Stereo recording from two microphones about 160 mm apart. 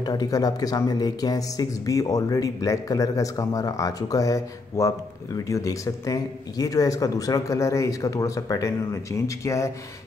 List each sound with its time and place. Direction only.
0.0 s speech: 25° left (ahead or behind)